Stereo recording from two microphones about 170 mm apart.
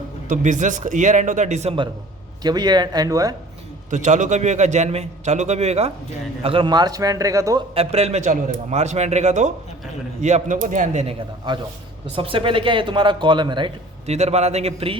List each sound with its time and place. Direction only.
0.3 s a man's voice: 50° right (ahead or behind)
2.4 s speech: 25° right (ahead or behind)
3.8 s a man's voice: 45° right (ahead or behind); by 7.6 s 20° right (ahead or behind)
7.7 s a man's voice: 35° right (ahead or behind)
14.1 s a man's voice: 40° right (ahead or behind)